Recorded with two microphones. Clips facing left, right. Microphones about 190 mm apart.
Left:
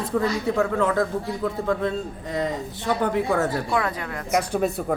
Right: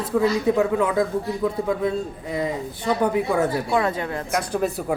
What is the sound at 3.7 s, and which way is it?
Speech, 25° right (ahead or behind).